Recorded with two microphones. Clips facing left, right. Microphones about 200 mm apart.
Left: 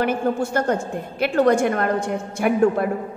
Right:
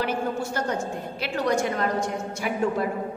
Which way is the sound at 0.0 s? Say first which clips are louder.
Left 6 dB; 55° left (ahead or behind).